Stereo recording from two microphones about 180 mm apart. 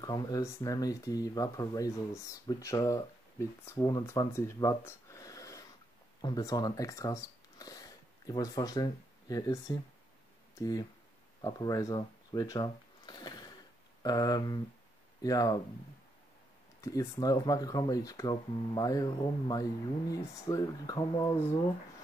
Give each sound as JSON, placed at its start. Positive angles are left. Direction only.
{"t": 0.0, "sound": "speech", "side_deg": 20}
{"t": 16.8, "sound": "speech", "side_deg": 20}